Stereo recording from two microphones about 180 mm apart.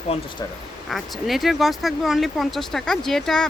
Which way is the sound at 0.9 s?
Centre (ahead or behind).